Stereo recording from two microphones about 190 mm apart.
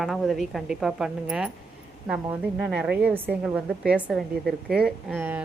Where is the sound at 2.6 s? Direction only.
5° right (ahead or behind).